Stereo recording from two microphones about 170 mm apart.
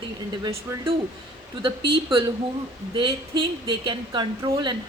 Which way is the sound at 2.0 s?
30° right (ahead or behind).